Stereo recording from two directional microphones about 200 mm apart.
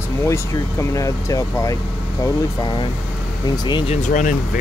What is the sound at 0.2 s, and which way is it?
Speech, 15° left (ahead or behind).